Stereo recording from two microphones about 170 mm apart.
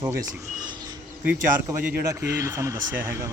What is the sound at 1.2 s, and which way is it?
Speech, 10° right (ahead or behind).